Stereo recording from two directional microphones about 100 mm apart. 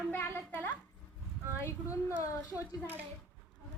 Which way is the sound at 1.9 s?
30° left (ahead or behind).